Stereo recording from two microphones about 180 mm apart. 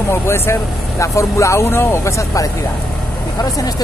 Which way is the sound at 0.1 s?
15° left (ahead or behind).